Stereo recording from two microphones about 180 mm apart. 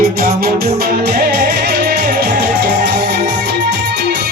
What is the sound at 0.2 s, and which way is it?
Music, 55° right (ahead or behind).